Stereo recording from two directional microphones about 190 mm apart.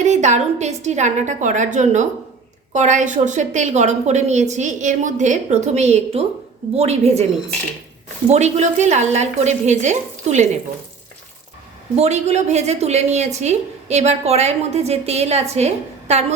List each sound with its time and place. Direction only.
0.0 s a woman's voice: 40° right (ahead or behind)
8.3 s a woman's voice: 35° right (ahead or behind)
11.9 s a woman's voice: 35° right (ahead or behind)